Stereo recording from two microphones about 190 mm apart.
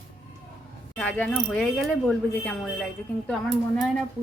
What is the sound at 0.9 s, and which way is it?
Speech, 5° left (ahead or behind).